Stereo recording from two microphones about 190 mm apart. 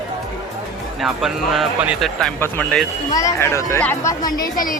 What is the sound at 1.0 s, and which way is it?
Speech, centre (ahead or behind).